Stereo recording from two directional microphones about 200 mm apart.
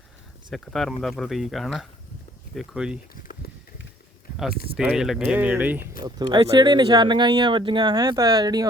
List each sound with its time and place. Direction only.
0.5 s speech: centre (ahead or behind)
3.2 s a sound: 50° left (ahead or behind)
4.8 s speech: 5° right (ahead or behind)
6.0 s speech: 20° right (ahead or behind)